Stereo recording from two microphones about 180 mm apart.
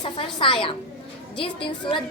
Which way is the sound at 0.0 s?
25° left (ahead or behind).